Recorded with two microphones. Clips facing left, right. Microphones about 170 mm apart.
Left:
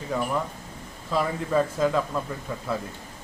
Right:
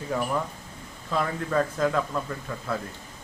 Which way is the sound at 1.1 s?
10° left (ahead or behind).